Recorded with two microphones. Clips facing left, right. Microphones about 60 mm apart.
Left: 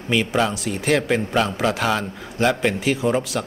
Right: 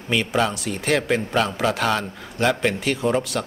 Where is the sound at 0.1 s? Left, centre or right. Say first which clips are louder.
Left 1 dB; centre.